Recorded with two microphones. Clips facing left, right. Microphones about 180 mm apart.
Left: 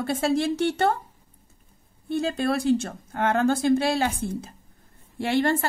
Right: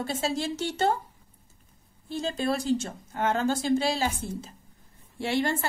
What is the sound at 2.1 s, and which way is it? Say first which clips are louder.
A woman's voice: left 4 dB; 60° left (ahead or behind).